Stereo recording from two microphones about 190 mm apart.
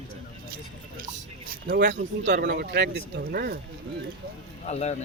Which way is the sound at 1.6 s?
65° right (ahead or behind).